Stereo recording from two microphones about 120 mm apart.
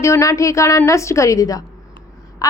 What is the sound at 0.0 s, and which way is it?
A woman's voice, 25° left (ahead or behind).